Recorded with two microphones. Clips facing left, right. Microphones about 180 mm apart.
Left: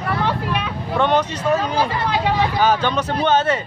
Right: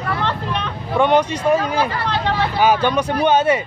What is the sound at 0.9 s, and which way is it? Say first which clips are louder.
Speech: right 3 dB; 10° right (ahead or behind).